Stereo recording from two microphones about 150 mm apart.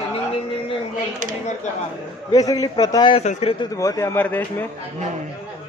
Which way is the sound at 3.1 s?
45° left (ahead or behind).